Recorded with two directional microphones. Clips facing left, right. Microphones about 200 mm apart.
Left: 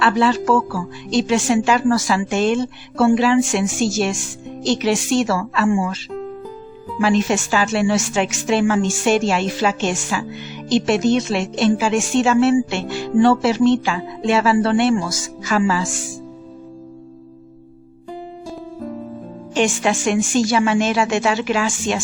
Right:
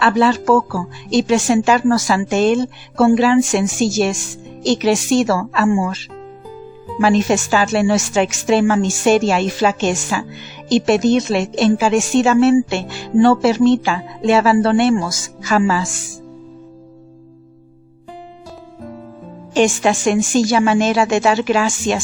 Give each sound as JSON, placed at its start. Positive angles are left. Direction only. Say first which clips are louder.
{"t": 0.0, "sound": "a woman's voice", "louder": "right 2 dB", "side_deg": -45}
{"t": 7.0, "sound": "a woman's voice", "louder": "right 3 dB", "side_deg": -40}
{"t": 19.5, "sound": "a woman's voice", "louder": "right 4 dB", "side_deg": -40}